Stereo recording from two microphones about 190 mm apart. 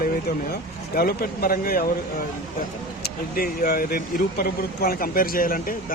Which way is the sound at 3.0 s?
50° left (ahead or behind).